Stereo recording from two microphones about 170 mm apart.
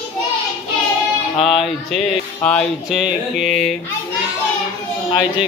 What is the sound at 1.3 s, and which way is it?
Music, centre (ahead or behind).